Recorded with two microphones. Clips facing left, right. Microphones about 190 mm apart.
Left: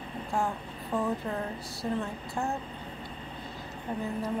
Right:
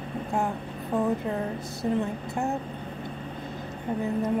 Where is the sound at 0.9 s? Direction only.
20° right (ahead or behind).